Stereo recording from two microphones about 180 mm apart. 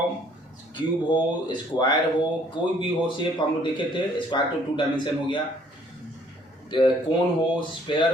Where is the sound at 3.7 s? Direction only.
25° left (ahead or behind).